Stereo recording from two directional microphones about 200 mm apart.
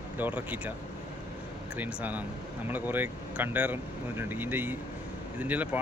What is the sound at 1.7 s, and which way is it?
Speech, 5° right (ahead or behind).